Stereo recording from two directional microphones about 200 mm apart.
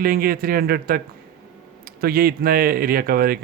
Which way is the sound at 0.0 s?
50° right (ahead or behind).